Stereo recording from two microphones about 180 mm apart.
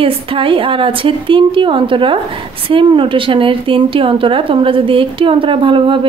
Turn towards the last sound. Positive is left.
turn(degrees=-30)  # may be behind; listen again after turning